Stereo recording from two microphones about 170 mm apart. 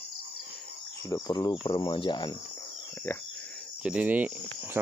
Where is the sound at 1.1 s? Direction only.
25° left (ahead or behind).